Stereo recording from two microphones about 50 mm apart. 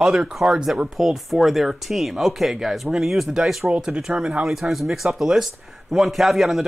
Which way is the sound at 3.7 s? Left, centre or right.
Centre.